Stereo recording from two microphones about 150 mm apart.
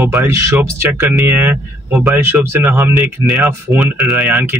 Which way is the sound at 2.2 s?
15° right (ahead or behind).